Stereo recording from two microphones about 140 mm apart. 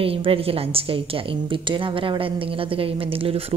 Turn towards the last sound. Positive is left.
turn(degrees=-45)  # may be behind; listen again after turning